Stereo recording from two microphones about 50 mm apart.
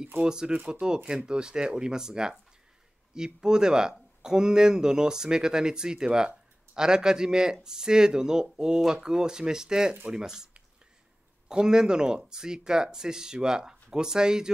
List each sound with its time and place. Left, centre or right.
0.2 s speech: centre
3.3 s speech: centre